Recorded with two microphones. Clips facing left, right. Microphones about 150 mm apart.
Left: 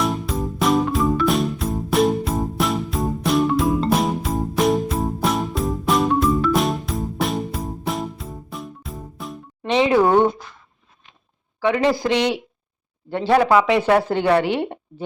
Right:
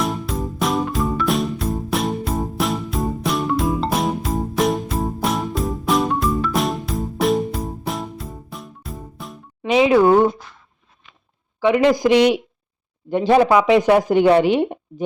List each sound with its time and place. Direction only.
0.0 s music: centre (ahead or behind)
11.6 s a woman's voice: 15° right (ahead or behind)